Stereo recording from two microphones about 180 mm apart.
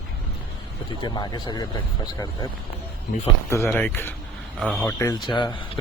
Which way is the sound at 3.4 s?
15° left (ahead or behind).